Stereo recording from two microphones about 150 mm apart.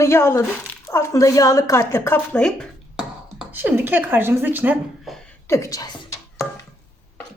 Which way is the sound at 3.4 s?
10° right (ahead or behind).